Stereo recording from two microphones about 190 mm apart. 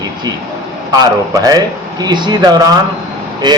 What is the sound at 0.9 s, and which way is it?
Speech, 20° right (ahead or behind).